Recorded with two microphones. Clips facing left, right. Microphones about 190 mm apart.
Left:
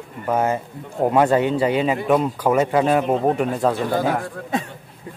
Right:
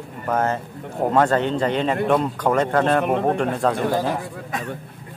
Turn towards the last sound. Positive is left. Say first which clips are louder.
# left 1 dB
turn(degrees=5)  # may be behind; listen again after turning